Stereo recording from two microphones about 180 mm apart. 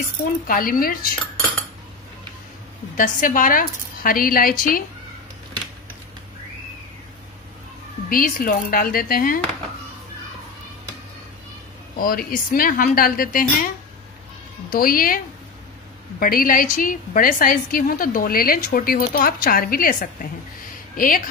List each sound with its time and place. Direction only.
0.5 s a woman's voice: 50° left (ahead or behind)
3.0 s a woman's voice: 50° left (ahead or behind)
8.1 s a woman's voice: 50° left (ahead or behind)
12.0 s a woman's voice: 55° left (ahead or behind)
14.7 s a woman's voice: 55° left (ahead or behind)
16.2 s a woman's voice: 50° left (ahead or behind)